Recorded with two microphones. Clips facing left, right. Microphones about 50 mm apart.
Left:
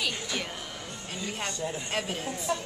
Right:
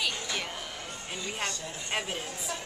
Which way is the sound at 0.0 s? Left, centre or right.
Centre.